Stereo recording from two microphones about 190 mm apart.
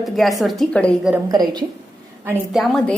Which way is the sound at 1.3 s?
20° right (ahead or behind).